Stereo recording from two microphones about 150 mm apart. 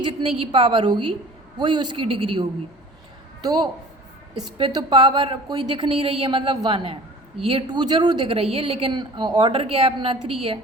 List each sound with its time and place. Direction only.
0.0 s a woman's voice: 35° right (ahead or behind)